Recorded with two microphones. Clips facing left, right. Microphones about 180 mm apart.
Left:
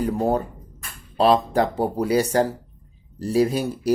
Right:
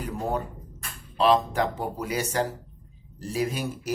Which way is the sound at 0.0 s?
35° left (ahead or behind).